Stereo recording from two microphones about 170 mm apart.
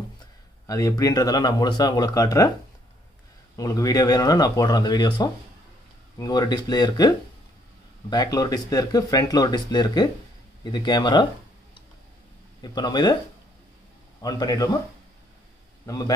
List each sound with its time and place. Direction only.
0.7 s speech: 20° left (ahead or behind)
3.5 s speech: 20° left (ahead or behind)
12.6 s speech: 25° left (ahead or behind)
14.2 s speech: 20° left (ahead or behind)
15.8 s a man's voice: 20° left (ahead or behind)